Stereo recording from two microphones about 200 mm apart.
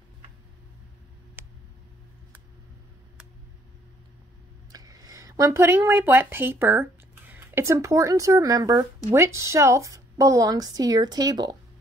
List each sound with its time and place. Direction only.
4.7 s a woman's voice: 20° right (ahead or behind)